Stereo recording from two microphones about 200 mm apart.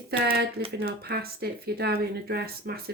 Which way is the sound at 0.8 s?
50° right (ahead or behind).